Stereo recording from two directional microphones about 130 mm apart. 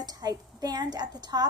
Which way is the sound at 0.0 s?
30° right (ahead or behind).